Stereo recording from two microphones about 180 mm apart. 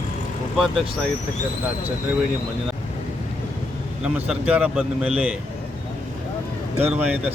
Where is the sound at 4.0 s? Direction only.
5° right (ahead or behind).